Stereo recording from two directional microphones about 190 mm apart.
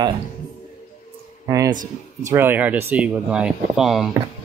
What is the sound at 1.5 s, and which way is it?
Speech, 15° right (ahead or behind).